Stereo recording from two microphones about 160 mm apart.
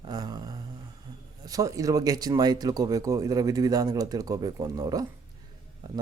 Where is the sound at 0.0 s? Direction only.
25° right (ahead or behind).